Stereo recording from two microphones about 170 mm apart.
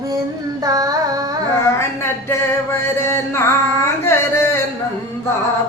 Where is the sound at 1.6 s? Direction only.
15° left (ahead or behind).